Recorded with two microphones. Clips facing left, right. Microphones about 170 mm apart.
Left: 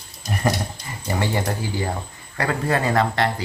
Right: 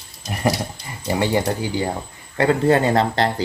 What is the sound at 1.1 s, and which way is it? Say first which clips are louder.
Speech: right 4 dB; 20° right (ahead or behind).